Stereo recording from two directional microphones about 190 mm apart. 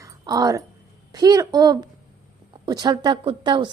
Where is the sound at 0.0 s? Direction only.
20° right (ahead or behind).